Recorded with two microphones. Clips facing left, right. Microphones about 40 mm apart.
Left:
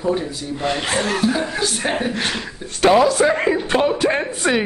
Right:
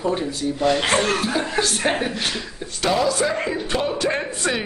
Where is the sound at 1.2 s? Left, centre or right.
Centre.